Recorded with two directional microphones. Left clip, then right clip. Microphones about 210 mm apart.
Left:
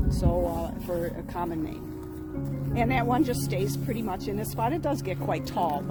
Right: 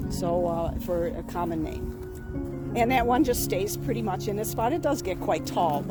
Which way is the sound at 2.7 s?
60° right (ahead or behind).